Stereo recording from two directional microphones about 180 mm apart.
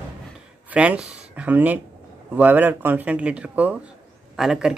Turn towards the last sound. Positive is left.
turn(degrees=0)  # may be behind; listen again after turning